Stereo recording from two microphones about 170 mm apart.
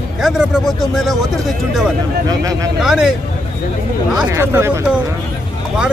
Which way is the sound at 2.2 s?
20° right (ahead or behind).